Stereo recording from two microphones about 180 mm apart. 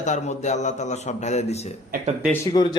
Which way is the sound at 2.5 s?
25° left (ahead or behind).